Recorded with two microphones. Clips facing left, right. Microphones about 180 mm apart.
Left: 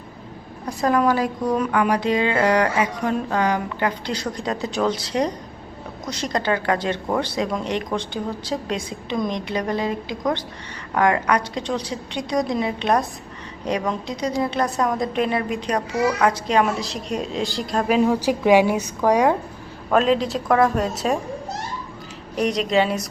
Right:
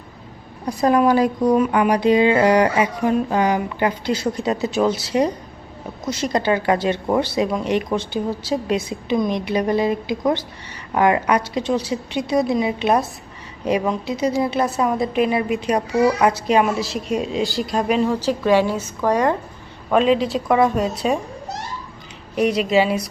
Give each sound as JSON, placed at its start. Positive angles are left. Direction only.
{"t": 0.6, "sound": "a woman's voice", "side_deg": -10}
{"t": 19.9, "sound": "a woman's voice", "side_deg": 0}
{"t": 22.4, "sound": "a woman's voice", "side_deg": -5}